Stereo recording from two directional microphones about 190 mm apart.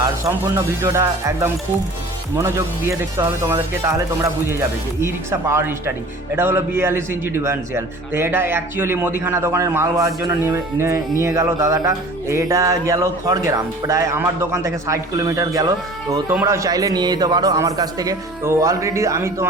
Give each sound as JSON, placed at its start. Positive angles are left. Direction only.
{"t": 0.3, "sound": "music", "side_deg": -15}
{"t": 3.0, "sound": "music", "side_deg": -15}